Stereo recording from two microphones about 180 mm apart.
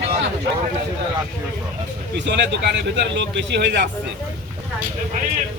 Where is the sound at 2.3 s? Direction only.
75° right (ahead or behind).